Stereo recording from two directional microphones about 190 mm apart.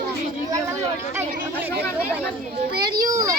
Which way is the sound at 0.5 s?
15° right (ahead or behind).